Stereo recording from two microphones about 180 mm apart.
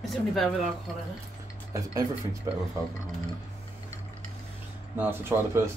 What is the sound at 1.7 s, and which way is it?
Speech, 20° right (ahead or behind).